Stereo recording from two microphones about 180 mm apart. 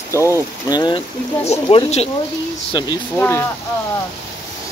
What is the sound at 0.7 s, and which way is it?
Speech, 25° left (ahead or behind).